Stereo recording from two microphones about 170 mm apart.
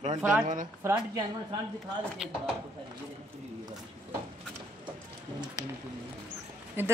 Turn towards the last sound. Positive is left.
turn(degrees=-10)  # may be behind; listen again after turning